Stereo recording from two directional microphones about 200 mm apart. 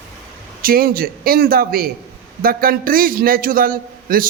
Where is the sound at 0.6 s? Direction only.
45° right (ahead or behind).